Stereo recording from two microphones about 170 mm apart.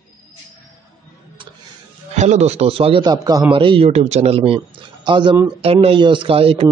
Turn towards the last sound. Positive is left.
turn(degrees=-35)  # may be behind; listen again after turning